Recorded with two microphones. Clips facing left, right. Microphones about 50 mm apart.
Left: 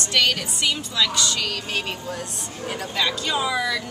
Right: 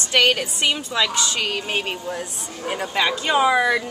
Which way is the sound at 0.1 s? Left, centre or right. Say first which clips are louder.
Right 4 dB; right.